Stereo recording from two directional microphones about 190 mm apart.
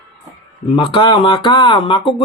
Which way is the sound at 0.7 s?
25° left (ahead or behind).